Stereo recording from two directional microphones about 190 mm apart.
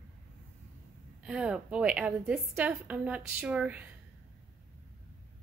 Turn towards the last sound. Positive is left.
turn(degrees=-5)  # may be behind; listen again after turning